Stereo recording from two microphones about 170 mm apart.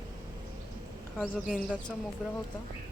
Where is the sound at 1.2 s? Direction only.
Centre (ahead or behind).